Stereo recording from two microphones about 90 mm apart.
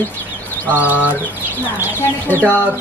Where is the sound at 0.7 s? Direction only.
20° right (ahead or behind).